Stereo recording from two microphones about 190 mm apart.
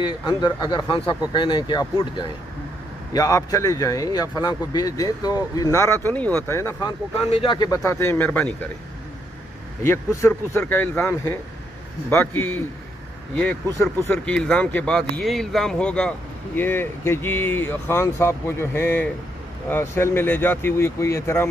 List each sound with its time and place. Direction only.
0.0 s speech: 20° left (ahead or behind)
7.2 s speech: 30° left (ahead or behind); by 8.6 s 5° left (ahead or behind)
9.8 s speech: 15° left (ahead or behind)
13.4 s speech: 10° left (ahead or behind)